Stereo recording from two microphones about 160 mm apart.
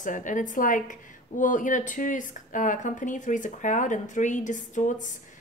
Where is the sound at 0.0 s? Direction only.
55° left (ahead or behind).